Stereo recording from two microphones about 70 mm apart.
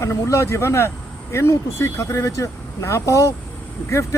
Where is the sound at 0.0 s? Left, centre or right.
Left.